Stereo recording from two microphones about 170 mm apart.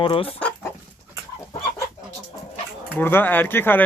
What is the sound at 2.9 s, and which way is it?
Speech, 10° left (ahead or behind).